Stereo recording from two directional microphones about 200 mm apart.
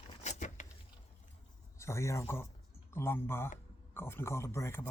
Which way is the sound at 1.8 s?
15° left (ahead or behind).